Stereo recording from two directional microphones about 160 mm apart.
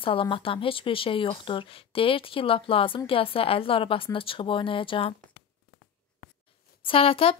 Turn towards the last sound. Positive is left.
turn(degrees=35)  # may be behind; listen again after turning